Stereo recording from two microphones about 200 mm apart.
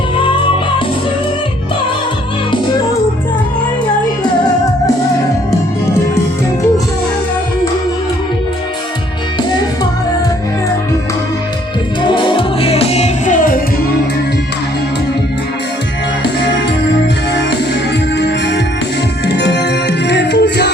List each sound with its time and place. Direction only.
12.0 s music: 25° left (ahead or behind); by 13.6 s 40° left (ahead or behind)
18.2 s music: 60° left (ahead or behind)